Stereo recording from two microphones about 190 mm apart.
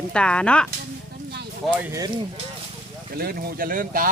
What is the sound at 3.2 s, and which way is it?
Speech, 55° right (ahead or behind).